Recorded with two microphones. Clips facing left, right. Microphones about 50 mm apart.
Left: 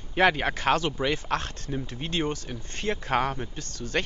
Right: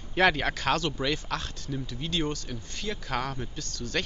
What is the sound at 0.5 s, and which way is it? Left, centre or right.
Speech, left.